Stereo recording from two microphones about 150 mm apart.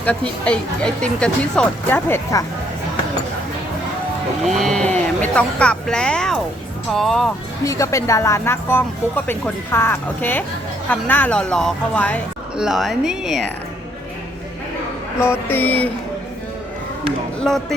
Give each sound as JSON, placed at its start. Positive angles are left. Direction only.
{"t": 0.0, "sound": "speech", "side_deg": 10}
{"t": 4.4, "sound": "speech", "side_deg": 0}
{"t": 7.6, "sound": "speech", "side_deg": 20}
{"t": 12.5, "sound": "speech", "side_deg": -5}
{"t": 15.4, "sound": "speech", "side_deg": 10}
{"t": 17.4, "sound": "speech", "side_deg": 0}